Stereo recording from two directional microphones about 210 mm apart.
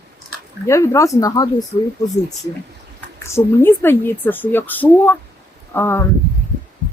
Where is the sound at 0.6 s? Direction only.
15° left (ahead or behind).